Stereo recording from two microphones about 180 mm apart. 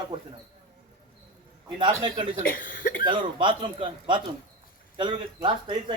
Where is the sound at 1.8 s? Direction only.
25° right (ahead or behind).